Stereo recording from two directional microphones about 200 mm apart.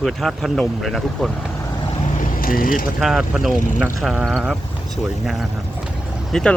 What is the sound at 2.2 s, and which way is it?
Vehicle, 45° left (ahead or behind).